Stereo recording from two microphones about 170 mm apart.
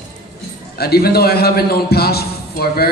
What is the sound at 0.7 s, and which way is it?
A man's voice, 65° left (ahead or behind).